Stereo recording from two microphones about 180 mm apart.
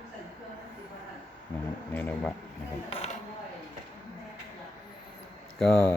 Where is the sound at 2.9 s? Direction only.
30° left (ahead or behind).